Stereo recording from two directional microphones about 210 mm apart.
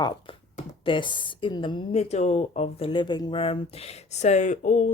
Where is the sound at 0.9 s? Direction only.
25° left (ahead or behind).